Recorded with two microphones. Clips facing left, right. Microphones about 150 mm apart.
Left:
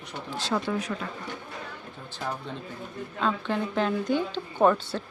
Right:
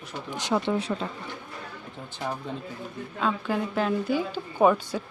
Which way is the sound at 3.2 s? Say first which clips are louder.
Right 1 dB; 5° right (ahead or behind).